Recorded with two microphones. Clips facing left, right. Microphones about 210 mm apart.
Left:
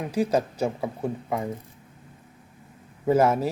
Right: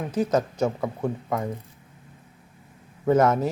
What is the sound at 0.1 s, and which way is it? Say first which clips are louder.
Speech: even; 10° left (ahead or behind).